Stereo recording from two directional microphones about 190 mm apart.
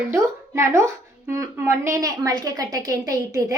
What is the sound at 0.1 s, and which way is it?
A woman's voice, 15° right (ahead or behind).